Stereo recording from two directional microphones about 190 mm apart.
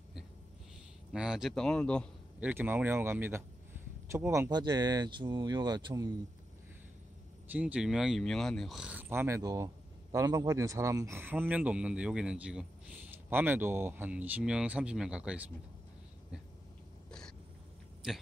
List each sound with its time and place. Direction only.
1.1 s speech: 5° right (ahead or behind)
2.4 s speech: 10° right (ahead or behind)
7.5 s speech: 5° right (ahead or behind)